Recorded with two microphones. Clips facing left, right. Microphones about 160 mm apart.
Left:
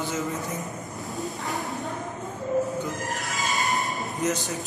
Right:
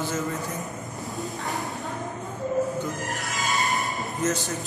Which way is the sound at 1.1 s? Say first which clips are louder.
Left 1 dB; centre (ahead or behind).